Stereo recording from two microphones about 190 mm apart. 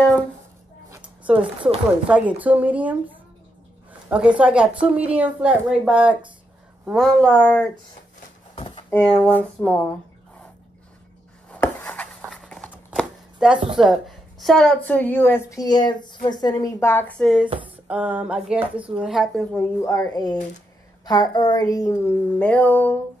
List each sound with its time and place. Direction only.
0.8 s a sound: 10° right (ahead or behind)
2.0 s a woman's voice: 5° right (ahead or behind)
4.1 s a woman's voice: 5° right (ahead or behind); by 7.7 s 10° left (ahead or behind)
8.5 s a sound: 25° left (ahead or behind)
9.0 s speech: 5° left (ahead or behind)
11.5 s chopping: 10° left (ahead or behind)
13.7 s a woman's voice: centre (ahead or behind)
19.8 s a woman's voice: 20° left (ahead or behind)